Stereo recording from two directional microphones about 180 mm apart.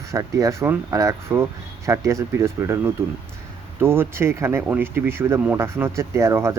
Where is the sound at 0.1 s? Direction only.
20° right (ahead or behind).